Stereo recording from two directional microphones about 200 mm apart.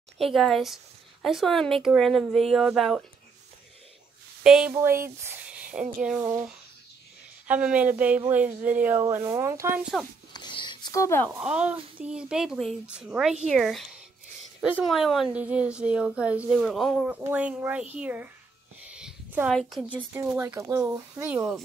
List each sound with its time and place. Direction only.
0.2 s a woman's voice: centre (ahead or behind)
4.4 s a woman's voice: 5° right (ahead or behind)
7.4 s speech: 5° right (ahead or behind)
10.3 s a sound: 20° left (ahead or behind)
11.2 s a woman's voice: 5° right (ahead or behind)